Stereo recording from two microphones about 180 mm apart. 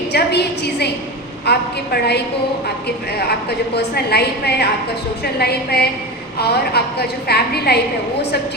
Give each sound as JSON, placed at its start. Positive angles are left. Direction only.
{"t": 0.1, "sound": "a sound", "side_deg": 65}
{"t": 1.5, "sound": "a woman's voice", "side_deg": 65}
{"t": 3.8, "sound": "a woman's voice", "side_deg": 65}